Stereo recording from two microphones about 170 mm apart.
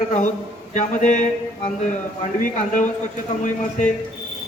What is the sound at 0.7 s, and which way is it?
Speech, 45° left (ahead or behind).